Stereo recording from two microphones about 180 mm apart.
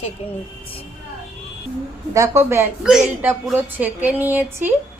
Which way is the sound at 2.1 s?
15° right (ahead or behind).